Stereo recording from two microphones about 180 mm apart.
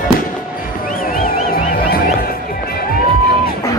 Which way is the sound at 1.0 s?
50° left (ahead or behind).